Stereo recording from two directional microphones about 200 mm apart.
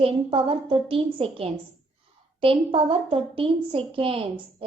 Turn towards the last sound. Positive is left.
turn(degrees=-25)  # may be behind; listen again after turning